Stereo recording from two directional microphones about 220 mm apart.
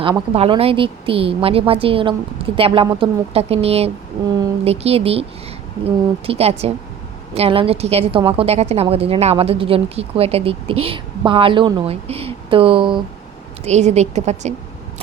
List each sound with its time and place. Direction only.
0.0 s a woman's voice: 25° right (ahead or behind)